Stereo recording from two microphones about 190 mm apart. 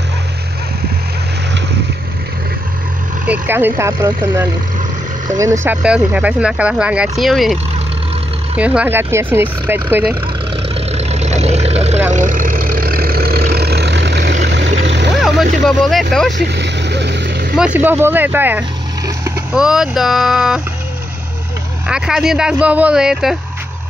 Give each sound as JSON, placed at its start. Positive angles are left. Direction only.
{"t": 3.3, "sound": "speech", "side_deg": -10}
{"t": 8.5, "sound": "speech", "side_deg": -5}
{"t": 10.9, "sound": "vehicle", "side_deg": -35}
{"t": 12.1, "sound": "vehicle", "side_deg": -45}
{"t": 15.1, "sound": "vehicle", "side_deg": 0}
{"t": 15.6, "sound": "speech", "side_deg": 0}
{"t": 16.4, "sound": "vehicle", "side_deg": -65}
{"t": 17.6, "sound": "speech", "side_deg": -10}
{"t": 21.8, "sound": "speech", "side_deg": -5}